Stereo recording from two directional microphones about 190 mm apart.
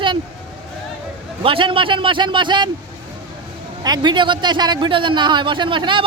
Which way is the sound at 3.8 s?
20° right (ahead or behind).